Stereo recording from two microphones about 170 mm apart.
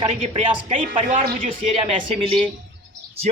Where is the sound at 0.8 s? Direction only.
50° right (ahead or behind).